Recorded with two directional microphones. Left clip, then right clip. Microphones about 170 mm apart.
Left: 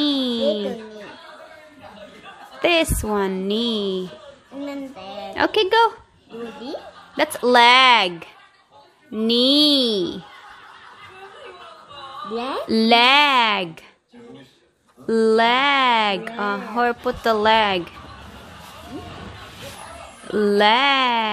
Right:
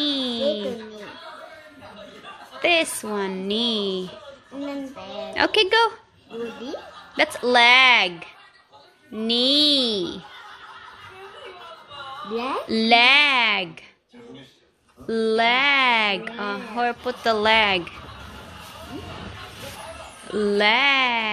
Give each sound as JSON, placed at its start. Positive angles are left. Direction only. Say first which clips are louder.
{"t": 0.0, "sound": "a sound", "louder": "left 3 dB", "side_deg": 30}
{"t": 2.6, "sound": "a woman's voice", "louder": "left 2 dB", "side_deg": 30}
{"t": 4.6, "sound": "child singing", "louder": "left 1 dB", "side_deg": -5}
{"t": 5.3, "sound": "a woman's voice", "louder": "left 1 dB", "side_deg": 20}
{"t": 7.2, "sound": "a woman's voice", "louder": "left 3 dB", "side_deg": 25}
{"t": 12.6, "sound": "a woman's voice", "louder": "left 1 dB", "side_deg": 30}
{"t": 15.0, "sound": "a woman's voice", "louder": "left 4 dB", "side_deg": 30}
{"t": 20.3, "sound": "a woman's voice", "louder": "left 3 dB", "side_deg": 30}